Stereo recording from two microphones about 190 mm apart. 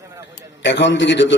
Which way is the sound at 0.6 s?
70° left (ahead or behind).